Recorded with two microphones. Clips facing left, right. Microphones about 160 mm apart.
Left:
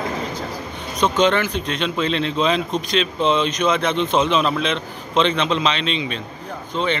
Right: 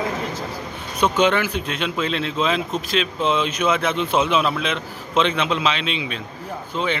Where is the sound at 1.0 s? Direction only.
10° right (ahead or behind).